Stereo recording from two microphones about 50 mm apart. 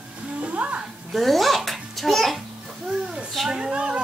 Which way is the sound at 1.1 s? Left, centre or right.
Centre.